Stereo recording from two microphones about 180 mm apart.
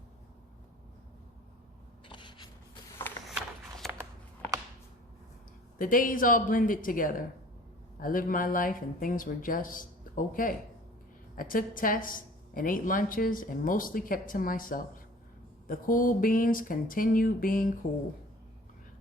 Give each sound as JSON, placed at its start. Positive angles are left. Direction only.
{"t": 2.0, "sound": "writing", "side_deg": 25}
{"t": 3.2, "sound": "a sound", "side_deg": 0}
{"t": 5.8, "sound": "a woman's voice", "side_deg": 50}